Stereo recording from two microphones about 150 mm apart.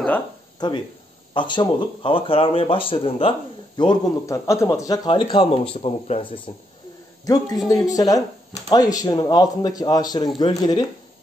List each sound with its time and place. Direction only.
0.6 s speech: 30° left (ahead or behind)
7.2 s speech: 25° left (ahead or behind)